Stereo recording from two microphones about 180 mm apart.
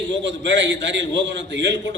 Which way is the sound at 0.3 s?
80° right.